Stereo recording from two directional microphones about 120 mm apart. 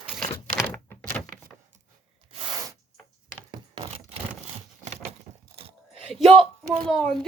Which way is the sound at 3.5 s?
55° right (ahead or behind).